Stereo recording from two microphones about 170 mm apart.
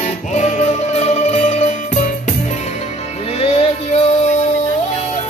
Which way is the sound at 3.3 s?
35° left (ahead or behind).